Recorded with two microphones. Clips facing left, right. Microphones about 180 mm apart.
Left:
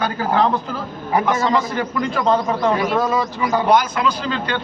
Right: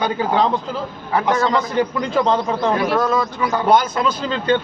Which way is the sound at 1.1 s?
15° left (ahead or behind).